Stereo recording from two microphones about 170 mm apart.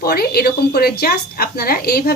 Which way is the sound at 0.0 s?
65° left (ahead or behind).